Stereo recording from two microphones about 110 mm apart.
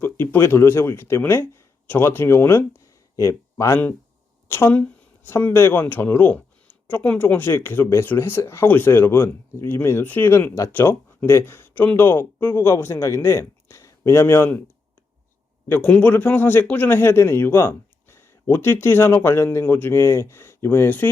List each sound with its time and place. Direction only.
0.0 s speech: 20° left (ahead or behind)
15.7 s speech: 15° left (ahead or behind)